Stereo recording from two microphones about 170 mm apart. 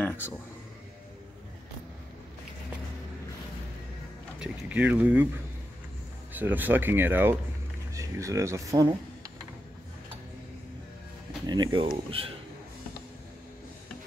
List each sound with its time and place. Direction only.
0.0 s a sound: 10° left (ahead or behind)
4.4 s speech: 10° right (ahead or behind)
6.3 s speech: 10° right (ahead or behind)
11.4 s speech: 25° right (ahead or behind)